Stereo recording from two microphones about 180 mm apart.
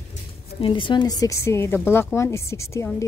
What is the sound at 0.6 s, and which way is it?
Speech, 30° left (ahead or behind).